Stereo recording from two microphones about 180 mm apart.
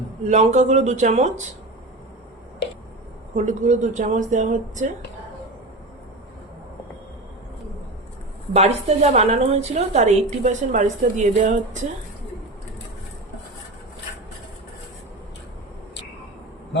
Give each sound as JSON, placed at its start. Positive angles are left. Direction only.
{"t": 0.3, "sound": "a woman's voice", "side_deg": -40}
{"t": 3.3, "sound": "a woman's voice", "side_deg": -40}
{"t": 8.5, "sound": "a woman's voice", "side_deg": -35}